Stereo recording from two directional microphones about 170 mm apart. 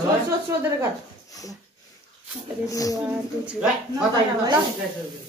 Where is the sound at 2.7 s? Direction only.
20° left (ahead or behind).